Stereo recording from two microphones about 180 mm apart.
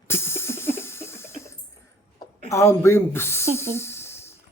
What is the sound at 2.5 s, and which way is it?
Speech, 15° left (ahead or behind).